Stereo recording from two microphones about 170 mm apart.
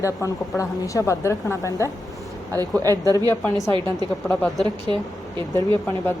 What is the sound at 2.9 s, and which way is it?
Speech, 20° left (ahead or behind).